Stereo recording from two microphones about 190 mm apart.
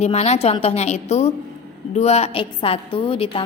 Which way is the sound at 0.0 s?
35° left (ahead or behind).